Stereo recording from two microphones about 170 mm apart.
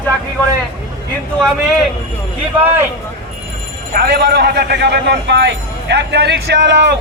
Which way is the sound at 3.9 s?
70° right (ahead or behind).